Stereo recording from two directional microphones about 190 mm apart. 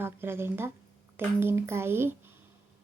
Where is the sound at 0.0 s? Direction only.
10° right (ahead or behind).